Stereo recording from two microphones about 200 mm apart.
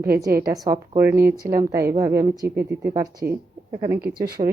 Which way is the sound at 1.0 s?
10° right (ahead or behind).